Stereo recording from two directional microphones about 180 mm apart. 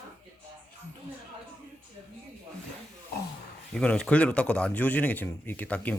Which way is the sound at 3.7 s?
5° left (ahead or behind).